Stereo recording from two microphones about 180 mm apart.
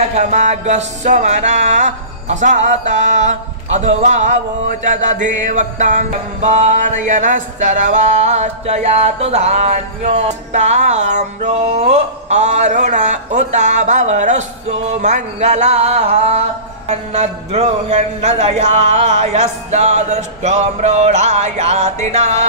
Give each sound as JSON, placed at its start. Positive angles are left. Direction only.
{"t": 0.1, "sound": "music", "side_deg": -40}